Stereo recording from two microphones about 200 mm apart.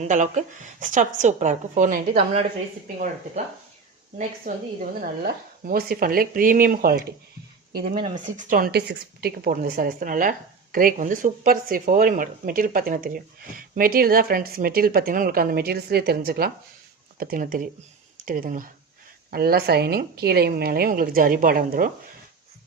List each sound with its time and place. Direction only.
0.0 s a woman's voice: 35° right (ahead or behind)
4.5 s speech: 45° right (ahead or behind)
8.1 s speech: 40° right (ahead or behind)